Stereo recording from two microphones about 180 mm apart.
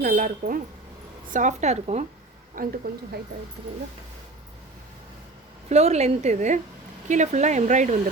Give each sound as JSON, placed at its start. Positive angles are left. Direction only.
{"t": 0.0, "sound": "a woman's voice", "side_deg": -50}
{"t": 2.6, "sound": "a woman's voice", "side_deg": -55}
{"t": 5.6, "sound": "a woman's voice", "side_deg": -35}